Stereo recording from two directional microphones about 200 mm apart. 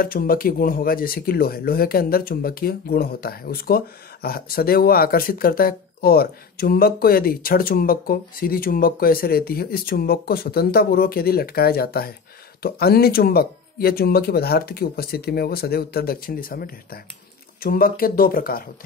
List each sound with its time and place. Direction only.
0.0 s speech: 45° left (ahead or behind)